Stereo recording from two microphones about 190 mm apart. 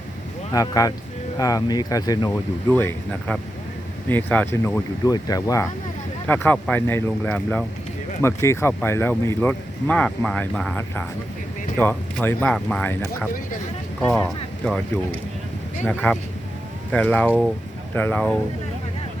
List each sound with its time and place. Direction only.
0.5 s speech: 20° left (ahead or behind)
15.8 s speech: 5° left (ahead or behind)